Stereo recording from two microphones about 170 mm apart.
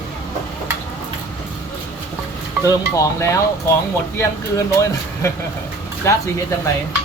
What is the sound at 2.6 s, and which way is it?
Speech, 20° left (ahead or behind).